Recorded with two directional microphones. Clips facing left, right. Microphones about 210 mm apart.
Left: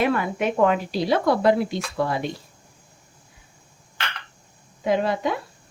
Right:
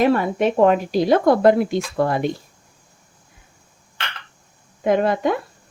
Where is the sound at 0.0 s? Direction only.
35° right (ahead or behind).